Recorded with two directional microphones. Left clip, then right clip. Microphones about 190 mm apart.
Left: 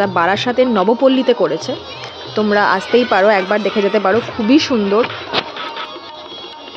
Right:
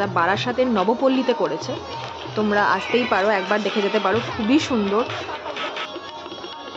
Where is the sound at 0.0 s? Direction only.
20° left (ahead or behind).